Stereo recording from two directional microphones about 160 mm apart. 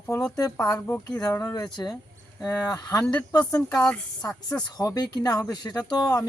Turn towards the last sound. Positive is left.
turn(degrees=20)  # may be behind; listen again after turning